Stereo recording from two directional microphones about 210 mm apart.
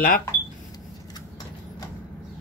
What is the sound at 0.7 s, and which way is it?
Printer, 15° left (ahead or behind).